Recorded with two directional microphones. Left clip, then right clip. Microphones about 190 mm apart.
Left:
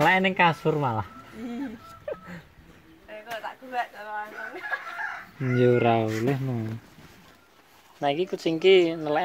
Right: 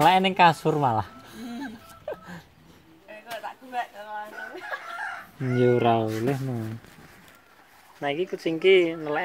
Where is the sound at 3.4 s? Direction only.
25° right (ahead or behind).